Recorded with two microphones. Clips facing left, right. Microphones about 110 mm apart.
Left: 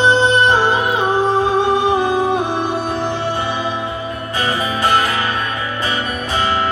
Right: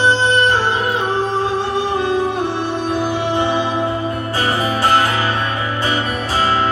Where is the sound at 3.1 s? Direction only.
20° right (ahead or behind).